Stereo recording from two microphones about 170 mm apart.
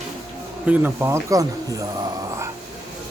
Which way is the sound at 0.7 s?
10° right (ahead or behind).